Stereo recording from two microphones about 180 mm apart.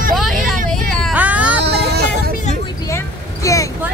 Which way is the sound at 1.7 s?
65° right (ahead or behind).